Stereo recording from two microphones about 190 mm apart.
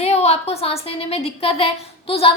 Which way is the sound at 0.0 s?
35° left (ahead or behind).